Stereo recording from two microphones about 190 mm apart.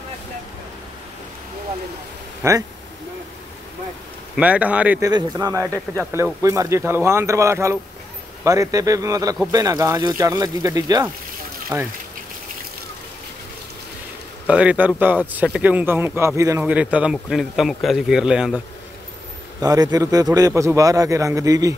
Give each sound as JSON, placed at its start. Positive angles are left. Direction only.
{"t": 2.4, "sound": "speech", "side_deg": -15}
{"t": 4.4, "sound": "speech", "side_deg": -10}
{"t": 5.1, "sound": "a man's voice", "side_deg": -20}
{"t": 14.5, "sound": "speech", "side_deg": -5}
{"t": 19.6, "sound": "a man's voice", "side_deg": -20}